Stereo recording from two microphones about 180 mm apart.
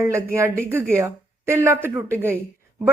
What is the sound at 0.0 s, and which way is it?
A woman's voice, 15° right (ahead or behind).